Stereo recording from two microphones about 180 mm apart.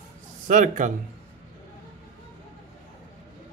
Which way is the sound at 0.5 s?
45° right (ahead or behind).